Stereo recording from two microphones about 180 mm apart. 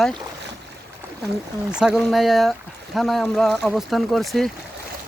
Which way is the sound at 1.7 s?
5° right (ahead or behind).